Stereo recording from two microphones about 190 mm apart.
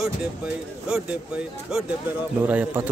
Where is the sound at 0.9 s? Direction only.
5° right (ahead or behind).